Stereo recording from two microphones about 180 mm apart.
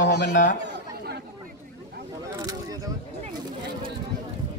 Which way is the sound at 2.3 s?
20° right (ahead or behind).